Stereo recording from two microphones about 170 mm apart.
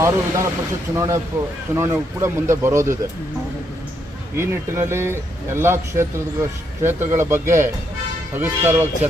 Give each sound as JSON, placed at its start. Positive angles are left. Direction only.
{"t": 0.0, "sound": "speech", "side_deg": -15}
{"t": 4.4, "sound": "speech", "side_deg": -15}